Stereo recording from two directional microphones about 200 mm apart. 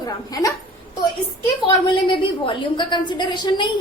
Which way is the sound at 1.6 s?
25° left (ahead or behind).